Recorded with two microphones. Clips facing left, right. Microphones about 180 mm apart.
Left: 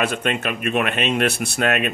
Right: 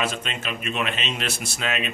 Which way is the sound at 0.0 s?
60° left (ahead or behind).